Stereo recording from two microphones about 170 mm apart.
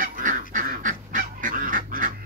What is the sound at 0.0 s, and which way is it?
Goose, 50° right (ahead or behind).